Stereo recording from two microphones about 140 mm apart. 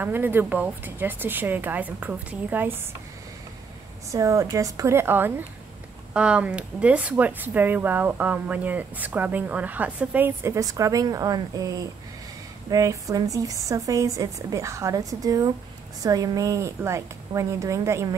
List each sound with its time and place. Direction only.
0.0 s speech: 15° right (ahead or behind)
4.1 s a woman's voice: 25° right (ahead or behind)